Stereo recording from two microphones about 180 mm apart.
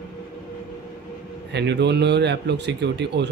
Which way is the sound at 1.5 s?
70° right (ahead or behind).